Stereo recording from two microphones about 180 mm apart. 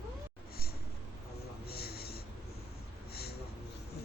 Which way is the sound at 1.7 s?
60° left (ahead or behind).